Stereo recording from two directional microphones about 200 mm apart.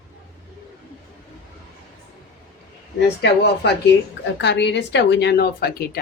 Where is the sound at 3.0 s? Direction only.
55° left (ahead or behind).